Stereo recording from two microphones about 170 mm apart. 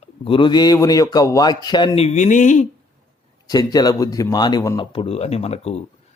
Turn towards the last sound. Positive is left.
turn(degrees=40)  # may be behind; listen again after turning